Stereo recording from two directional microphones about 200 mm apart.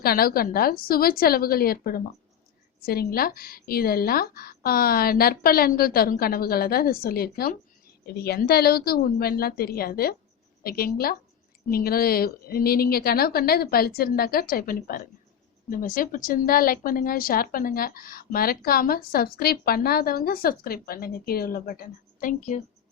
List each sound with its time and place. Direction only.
0.0 s speech: 50° left (ahead or behind)